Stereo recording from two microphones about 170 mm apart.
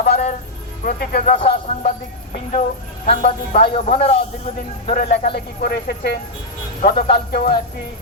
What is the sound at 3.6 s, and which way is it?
Speech, 35° left (ahead or behind).